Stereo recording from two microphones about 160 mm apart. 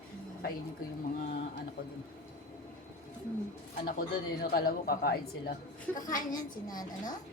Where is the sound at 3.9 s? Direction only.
70° left (ahead or behind).